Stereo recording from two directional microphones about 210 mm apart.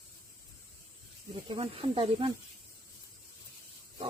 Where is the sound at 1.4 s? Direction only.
25° right (ahead or behind).